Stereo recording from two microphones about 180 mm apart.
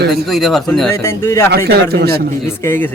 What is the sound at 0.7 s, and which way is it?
Speech, 10° left (ahead or behind).